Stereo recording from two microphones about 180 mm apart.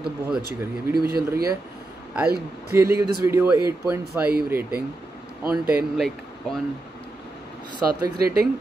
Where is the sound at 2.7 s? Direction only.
15° right (ahead or behind).